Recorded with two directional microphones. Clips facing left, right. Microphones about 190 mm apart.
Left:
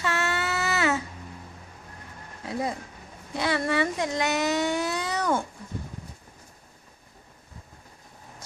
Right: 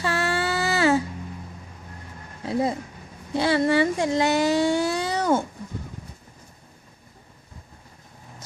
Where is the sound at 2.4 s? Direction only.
30° right (ahead or behind).